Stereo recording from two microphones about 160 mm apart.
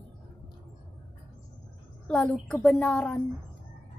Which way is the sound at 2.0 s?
5° left (ahead or behind).